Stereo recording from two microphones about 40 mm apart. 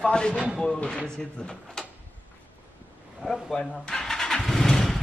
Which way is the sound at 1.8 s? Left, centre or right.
Centre.